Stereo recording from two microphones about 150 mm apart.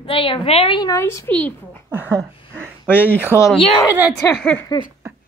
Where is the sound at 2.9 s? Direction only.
15° left (ahead or behind).